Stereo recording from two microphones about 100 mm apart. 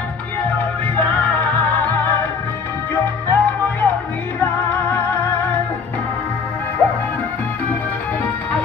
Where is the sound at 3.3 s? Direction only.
20° left (ahead or behind).